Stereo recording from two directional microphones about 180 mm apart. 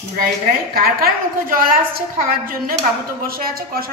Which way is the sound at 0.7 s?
55° right (ahead or behind).